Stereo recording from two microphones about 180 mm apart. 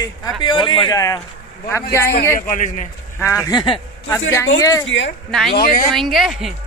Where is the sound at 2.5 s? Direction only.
45° left (ahead or behind).